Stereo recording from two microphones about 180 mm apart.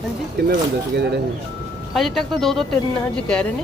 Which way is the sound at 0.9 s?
70° right (ahead or behind).